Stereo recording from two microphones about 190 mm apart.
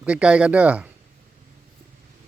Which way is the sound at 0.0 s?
5° right (ahead or behind).